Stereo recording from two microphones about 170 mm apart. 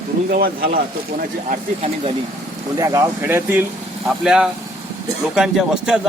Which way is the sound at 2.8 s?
20° right (ahead or behind).